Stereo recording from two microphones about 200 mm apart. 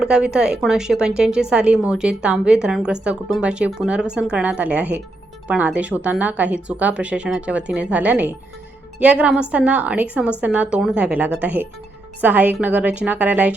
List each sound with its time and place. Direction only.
0.0 s a woman's voice: 5° right (ahead or behind)